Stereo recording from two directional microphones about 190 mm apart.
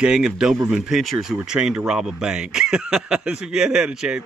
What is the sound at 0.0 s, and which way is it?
Speech, 5° right (ahead or behind).